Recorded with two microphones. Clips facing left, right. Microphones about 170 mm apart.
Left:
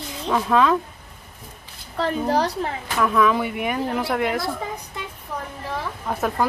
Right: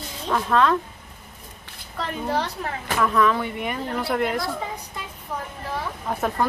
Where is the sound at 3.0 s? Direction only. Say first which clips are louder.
Left 2 dB; 5° left (ahead or behind).